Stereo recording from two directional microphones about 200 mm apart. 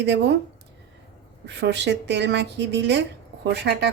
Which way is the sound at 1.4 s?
60° right (ahead or behind).